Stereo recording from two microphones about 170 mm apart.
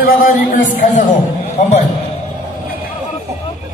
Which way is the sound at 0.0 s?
55° left (ahead or behind).